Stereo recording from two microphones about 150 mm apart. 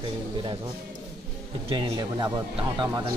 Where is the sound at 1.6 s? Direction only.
30° right (ahead or behind).